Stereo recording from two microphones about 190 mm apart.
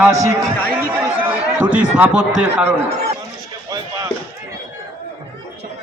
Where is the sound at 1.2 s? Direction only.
10° right (ahead or behind).